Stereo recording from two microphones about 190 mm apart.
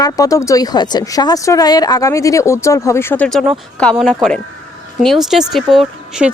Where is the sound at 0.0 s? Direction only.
20° left (ahead or behind).